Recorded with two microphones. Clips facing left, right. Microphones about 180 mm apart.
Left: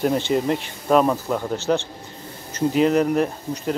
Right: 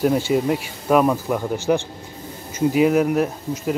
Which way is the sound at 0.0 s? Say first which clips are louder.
Right 2 dB; 5° right (ahead or behind).